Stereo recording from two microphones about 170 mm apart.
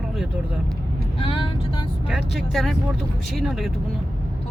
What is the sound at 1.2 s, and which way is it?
Speech, 30° left (ahead or behind).